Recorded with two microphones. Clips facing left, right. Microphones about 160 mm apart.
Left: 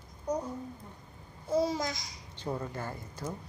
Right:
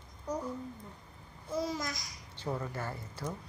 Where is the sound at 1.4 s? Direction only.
30° left (ahead or behind).